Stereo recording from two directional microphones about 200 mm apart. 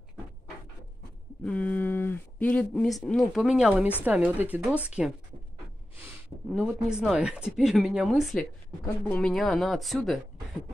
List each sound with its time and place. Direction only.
1.4 s a woman's voice: 5° left (ahead or behind)
6.6 s speech: 5° right (ahead or behind)